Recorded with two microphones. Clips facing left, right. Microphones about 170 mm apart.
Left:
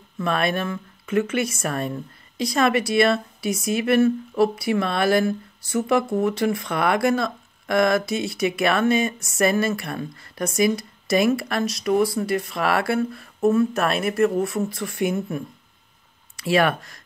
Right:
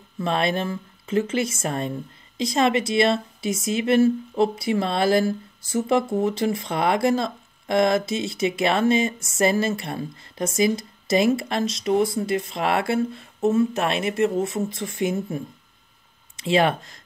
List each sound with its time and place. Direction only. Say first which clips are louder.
0.2 s speech: even; 25° right (ahead or behind)
16.3 s speech: even; 25° right (ahead or behind)